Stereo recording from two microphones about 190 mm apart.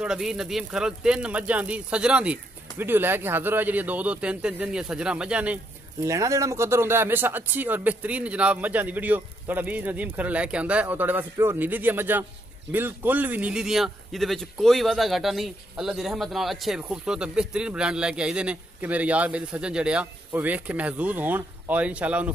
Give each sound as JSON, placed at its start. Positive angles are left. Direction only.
{"t": 0.0, "sound": "a man's voice", "side_deg": -5}
{"t": 6.0, "sound": "a man's voice", "side_deg": -15}